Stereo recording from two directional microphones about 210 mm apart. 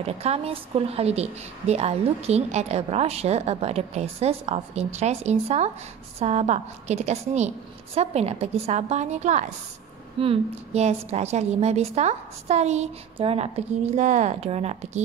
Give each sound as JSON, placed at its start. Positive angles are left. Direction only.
{"t": 0.0, "sound": "a woman's voice", "side_deg": -30}